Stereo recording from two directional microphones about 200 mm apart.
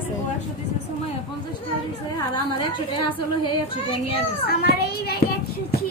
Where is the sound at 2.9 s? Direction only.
25° left (ahead or behind).